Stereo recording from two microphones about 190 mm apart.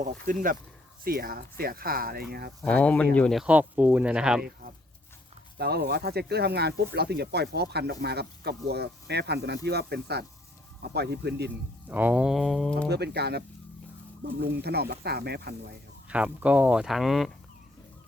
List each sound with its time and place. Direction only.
0.0 s speech: 45° right (ahead or behind)
2.6 s speech: 5° left (ahead or behind)
5.5 s speech: 55° right (ahead or behind)
11.9 s speech: 10° right (ahead or behind)
12.9 s speech: 60° right (ahead or behind)
14.4 s speech: 55° right (ahead or behind)
16.0 s speech: 5° right (ahead or behind)